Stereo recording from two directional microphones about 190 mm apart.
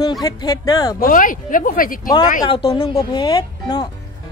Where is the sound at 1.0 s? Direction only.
45° left (ahead or behind).